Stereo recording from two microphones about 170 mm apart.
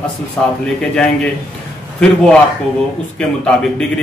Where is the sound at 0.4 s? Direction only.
10° left (ahead or behind).